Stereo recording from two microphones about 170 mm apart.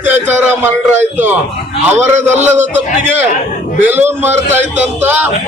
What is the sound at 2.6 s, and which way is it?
A man's voice, 10° right (ahead or behind).